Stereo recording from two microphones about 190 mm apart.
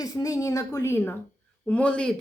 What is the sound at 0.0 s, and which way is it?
A woman's voice, 20° left (ahead or behind).